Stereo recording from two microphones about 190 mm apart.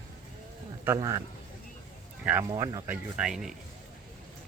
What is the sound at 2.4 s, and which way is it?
Speech, 20° right (ahead or behind).